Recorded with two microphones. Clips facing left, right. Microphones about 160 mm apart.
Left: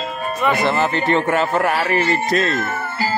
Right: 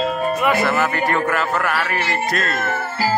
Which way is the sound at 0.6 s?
25° left (ahead or behind).